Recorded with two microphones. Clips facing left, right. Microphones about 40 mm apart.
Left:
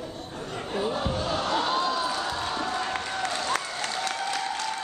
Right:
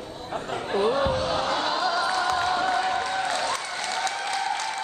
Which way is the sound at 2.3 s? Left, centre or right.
Right.